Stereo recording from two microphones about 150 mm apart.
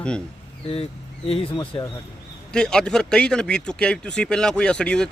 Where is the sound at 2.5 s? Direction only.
5° left (ahead or behind).